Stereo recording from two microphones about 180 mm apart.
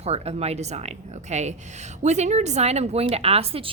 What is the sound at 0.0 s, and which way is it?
A woman's voice, 35° right (ahead or behind).